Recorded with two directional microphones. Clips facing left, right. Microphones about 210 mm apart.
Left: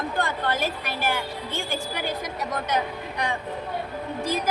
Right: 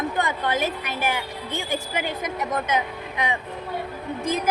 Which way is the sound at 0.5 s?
20° right (ahead or behind).